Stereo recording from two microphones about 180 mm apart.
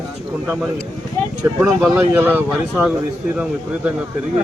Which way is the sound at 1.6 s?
5° right (ahead or behind).